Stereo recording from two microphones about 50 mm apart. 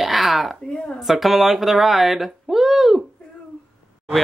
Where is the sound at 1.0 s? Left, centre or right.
Centre.